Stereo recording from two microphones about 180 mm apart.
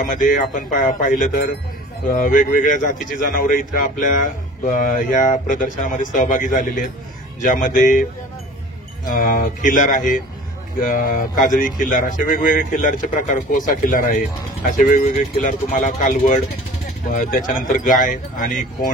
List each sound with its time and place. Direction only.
0.0 s a man's voice: 50° left (ahead or behind)